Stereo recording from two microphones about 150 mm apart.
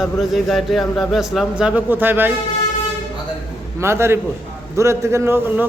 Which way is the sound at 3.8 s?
15° right (ahead or behind).